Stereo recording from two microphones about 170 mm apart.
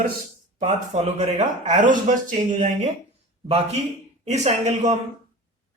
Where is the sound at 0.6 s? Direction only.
45° right (ahead or behind).